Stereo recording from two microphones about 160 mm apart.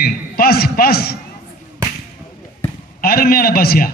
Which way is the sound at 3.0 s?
70° left (ahead or behind).